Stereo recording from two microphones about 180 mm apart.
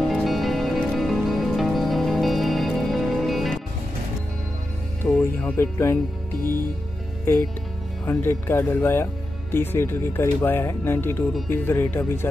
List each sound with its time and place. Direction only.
0.1 s music: centre (ahead or behind)
5.0 s speech: 10° left (ahead or behind)
8.0 s speech: 10° left (ahead or behind)